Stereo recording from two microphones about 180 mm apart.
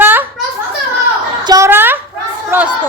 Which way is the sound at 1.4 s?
20° right (ahead or behind).